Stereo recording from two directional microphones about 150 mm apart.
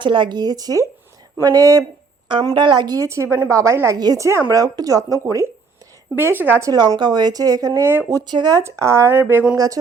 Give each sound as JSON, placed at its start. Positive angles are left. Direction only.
{"t": 0.0, "sound": "a woman's voice", "side_deg": -30}
{"t": 6.7, "sound": "a woman's voice", "side_deg": -25}